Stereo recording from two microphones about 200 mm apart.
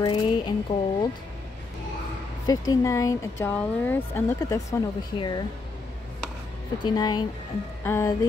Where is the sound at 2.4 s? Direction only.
20° left (ahead or behind).